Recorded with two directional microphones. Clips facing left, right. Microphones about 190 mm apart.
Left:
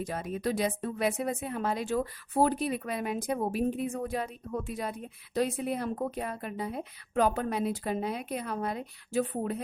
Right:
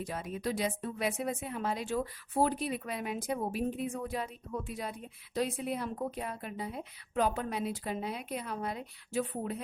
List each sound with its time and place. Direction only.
0.1 s a woman's voice: 50° left (ahead or behind)